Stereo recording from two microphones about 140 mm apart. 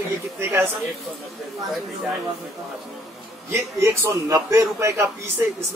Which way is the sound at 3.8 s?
20° right (ahead or behind).